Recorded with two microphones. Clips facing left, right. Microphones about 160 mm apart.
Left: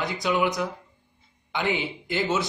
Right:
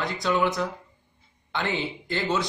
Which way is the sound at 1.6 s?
15° left (ahead or behind).